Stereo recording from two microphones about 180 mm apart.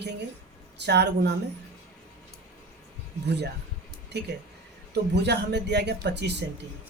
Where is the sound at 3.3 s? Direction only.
65° right (ahead or behind).